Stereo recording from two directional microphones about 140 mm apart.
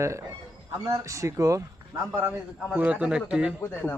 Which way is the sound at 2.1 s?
10° right (ahead or behind).